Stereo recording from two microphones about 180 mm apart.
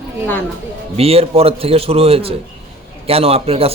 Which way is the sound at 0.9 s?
35° right (ahead or behind).